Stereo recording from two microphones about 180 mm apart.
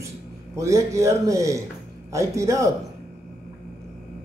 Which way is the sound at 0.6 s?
15° right (ahead or behind).